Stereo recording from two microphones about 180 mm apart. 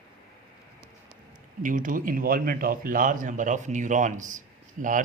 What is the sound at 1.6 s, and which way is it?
Speech, 45° right (ahead or behind).